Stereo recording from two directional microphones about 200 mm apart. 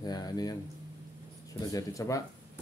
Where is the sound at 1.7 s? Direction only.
15° left (ahead or behind).